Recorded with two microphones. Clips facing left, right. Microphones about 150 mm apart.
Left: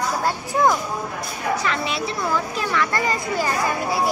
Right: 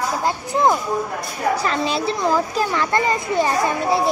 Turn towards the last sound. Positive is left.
turn(degrees=-25)  # may be behind; listen again after turning